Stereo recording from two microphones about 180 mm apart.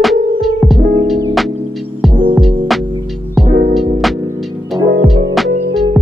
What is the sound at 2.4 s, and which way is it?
Music, centre (ahead or behind).